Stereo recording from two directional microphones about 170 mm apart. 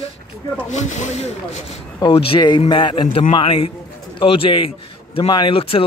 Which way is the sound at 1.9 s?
30° left (ahead or behind).